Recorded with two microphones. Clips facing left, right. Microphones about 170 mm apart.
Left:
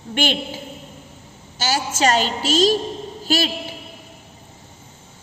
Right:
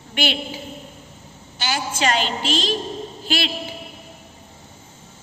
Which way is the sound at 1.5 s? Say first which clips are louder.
Left 3 dB; 40° left (ahead or behind).